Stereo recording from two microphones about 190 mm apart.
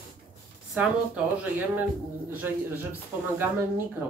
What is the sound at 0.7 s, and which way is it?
Speech, 5° right (ahead or behind).